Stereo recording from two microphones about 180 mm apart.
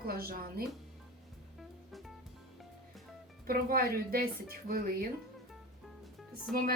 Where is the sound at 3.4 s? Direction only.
55° right (ahead or behind).